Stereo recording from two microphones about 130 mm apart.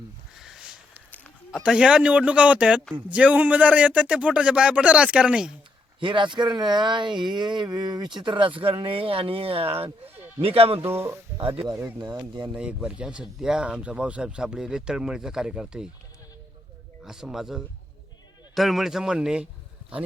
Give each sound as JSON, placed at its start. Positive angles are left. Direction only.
{"t": 0.3, "sound": "a sound", "side_deg": -5}
{"t": 1.6, "sound": "speech", "side_deg": -5}
{"t": 6.0, "sound": "speech", "side_deg": -35}
{"t": 10.8, "sound": "speech", "side_deg": -20}
{"t": 11.3, "sound": "speech", "side_deg": -40}
{"t": 11.7, "sound": "speech", "side_deg": -15}
{"t": 11.9, "sound": "speech", "side_deg": -30}
{"t": 12.5, "sound": "speech", "side_deg": -10}
{"t": 17.0, "sound": "a man's voice", "side_deg": -5}